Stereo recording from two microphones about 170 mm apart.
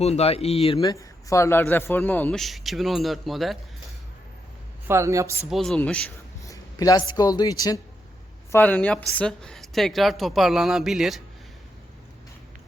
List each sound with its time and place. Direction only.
0.0 s speech: 40° left (ahead or behind); by 3.6 s centre (ahead or behind)
4.9 s a woman's voice: 15° right (ahead or behind)
5.5 s speech: centre (ahead or behind)
6.4 s speech: 20° left (ahead or behind)
8.5 s speech: 10° left (ahead or behind)